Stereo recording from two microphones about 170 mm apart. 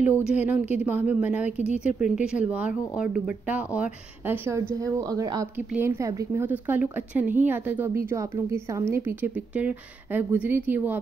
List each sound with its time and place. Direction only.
0.0 s a woman's voice: 10° right (ahead or behind)